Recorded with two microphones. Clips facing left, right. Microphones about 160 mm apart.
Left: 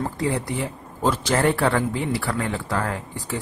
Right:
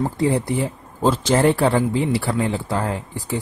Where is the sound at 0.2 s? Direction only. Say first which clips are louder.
Right 5 dB; 30° right (ahead or behind).